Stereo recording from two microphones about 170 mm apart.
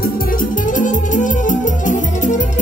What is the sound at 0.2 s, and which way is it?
Music, 55° left (ahead or behind).